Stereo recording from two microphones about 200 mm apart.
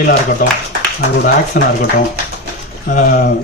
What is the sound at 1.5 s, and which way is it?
Speech, 40° left (ahead or behind).